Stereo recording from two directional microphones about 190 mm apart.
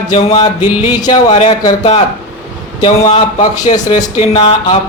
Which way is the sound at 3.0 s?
35° left (ahead or behind).